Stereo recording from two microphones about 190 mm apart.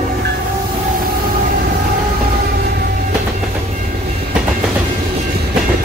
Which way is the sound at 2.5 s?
55° right (ahead or behind).